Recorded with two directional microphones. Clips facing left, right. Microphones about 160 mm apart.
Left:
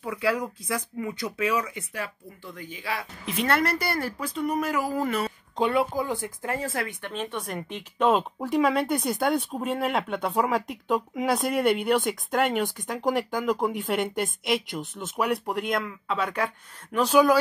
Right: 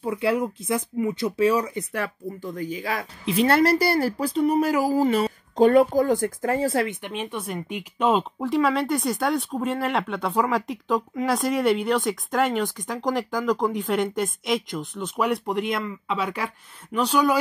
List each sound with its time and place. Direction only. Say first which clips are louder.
0.0 s speech: right 4 dB; 25° right (ahead or behind)
1.9 s speech: right 6 dB; 45° right (ahead or behind)
3.3 s speech: right 6 dB; 30° right (ahead or behind)
5.6 s speech: right 8 dB; 45° right (ahead or behind)
7.0 s speech: right 1 dB; 10° right (ahead or behind)
17.0 s speech: left 2 dB; 5° left (ahead or behind)